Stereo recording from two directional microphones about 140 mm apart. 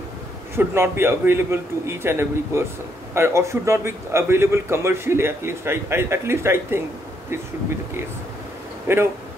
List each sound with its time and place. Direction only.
0.6 s a man's voice: 15° right (ahead or behind)
8.9 s a man's voice: 15° right (ahead or behind)